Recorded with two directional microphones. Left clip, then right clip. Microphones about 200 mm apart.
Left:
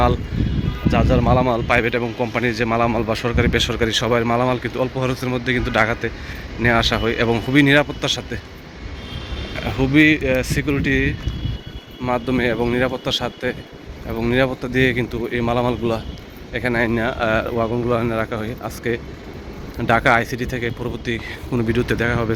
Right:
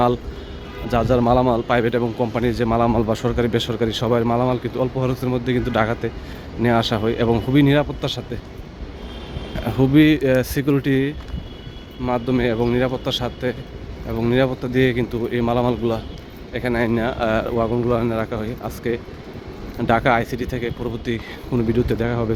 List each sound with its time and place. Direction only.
0.9 s speech: 20° right (ahead or behind); by 8.4 s 5° right (ahead or behind)
9.6 s speech: 20° right (ahead or behind)
12.0 s speech: 5° right (ahead or behind)